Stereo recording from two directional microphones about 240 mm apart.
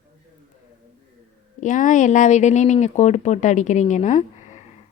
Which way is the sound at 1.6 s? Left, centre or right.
Left.